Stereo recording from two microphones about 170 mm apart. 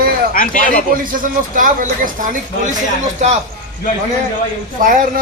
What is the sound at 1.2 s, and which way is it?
Speech, 50° right (ahead or behind).